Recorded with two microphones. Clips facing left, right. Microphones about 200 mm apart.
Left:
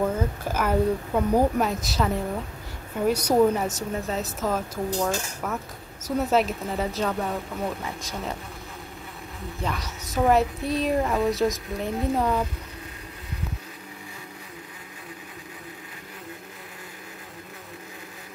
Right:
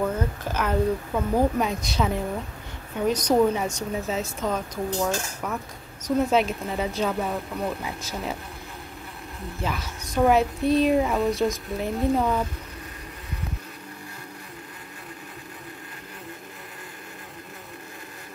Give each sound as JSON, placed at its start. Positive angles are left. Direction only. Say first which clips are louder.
{"t": 0.0, "sound": "a woman's voice", "louder": "left 1 dB", "side_deg": 10}
{"t": 9.6, "sound": "a woman's voice", "louder": "even", "side_deg": 0}